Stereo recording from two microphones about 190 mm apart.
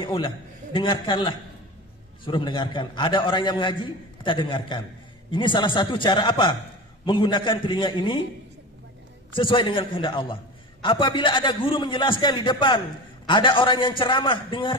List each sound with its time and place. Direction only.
0.0 s a man's voice: 25° left (ahead or behind)
9.3 s a man's voice: 25° left (ahead or behind)